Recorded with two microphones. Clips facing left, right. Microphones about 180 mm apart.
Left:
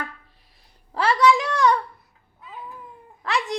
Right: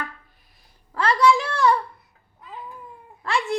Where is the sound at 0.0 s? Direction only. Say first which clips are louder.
Even; 30° left (ahead or behind).